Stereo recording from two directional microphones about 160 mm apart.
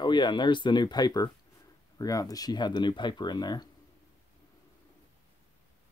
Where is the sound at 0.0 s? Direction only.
30° left (ahead or behind).